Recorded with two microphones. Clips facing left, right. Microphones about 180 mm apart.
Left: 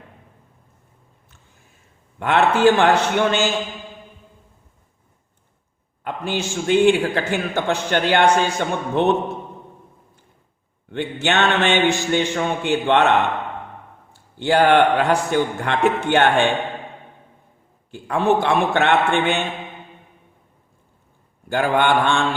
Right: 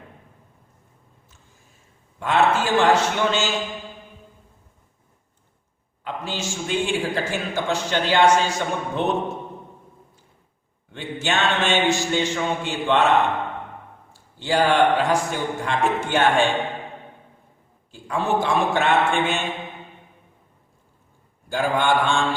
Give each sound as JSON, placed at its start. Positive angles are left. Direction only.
{"t": 2.1, "sound": "a man's voice", "side_deg": 60}
{"t": 6.1, "sound": "a man's voice", "side_deg": 60}
{"t": 10.9, "sound": "a man's voice", "side_deg": 65}
{"t": 17.9, "sound": "a man's voice", "side_deg": 60}
{"t": 21.5, "sound": "a man's voice", "side_deg": 60}